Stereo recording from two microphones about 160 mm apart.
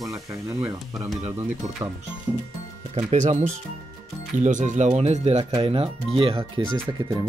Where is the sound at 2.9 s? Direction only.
45° right (ahead or behind).